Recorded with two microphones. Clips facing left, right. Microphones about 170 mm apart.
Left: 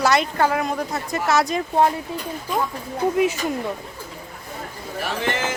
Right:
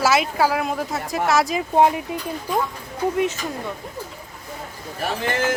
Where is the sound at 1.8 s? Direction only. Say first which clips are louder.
Right 2 dB; 15° right (ahead or behind).